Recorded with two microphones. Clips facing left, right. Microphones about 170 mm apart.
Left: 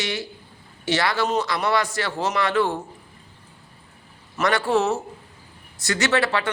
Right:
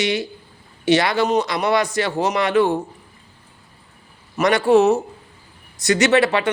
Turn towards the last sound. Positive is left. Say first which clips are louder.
# right 6 dB
turn(degrees=-20)  # may be behind; listen again after turning